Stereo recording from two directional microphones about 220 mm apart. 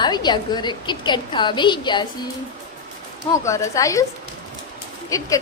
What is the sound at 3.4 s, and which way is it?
Speech, 15° left (ahead or behind).